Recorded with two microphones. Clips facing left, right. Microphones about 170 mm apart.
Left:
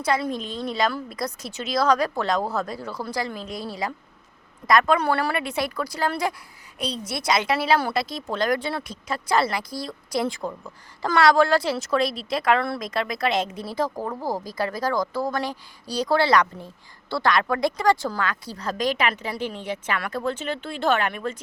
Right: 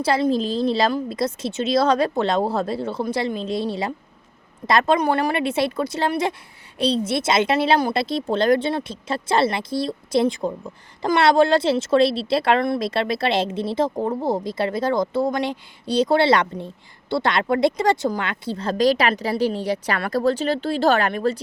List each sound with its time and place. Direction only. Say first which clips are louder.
0.0 s a woman's voice: right 5 dB; 30° right (ahead or behind)